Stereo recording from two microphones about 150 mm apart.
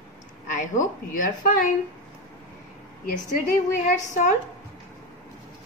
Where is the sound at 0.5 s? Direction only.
60° left (ahead or behind).